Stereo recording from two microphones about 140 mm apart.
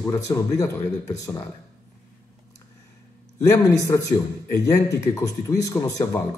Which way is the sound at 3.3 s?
20° left (ahead or behind).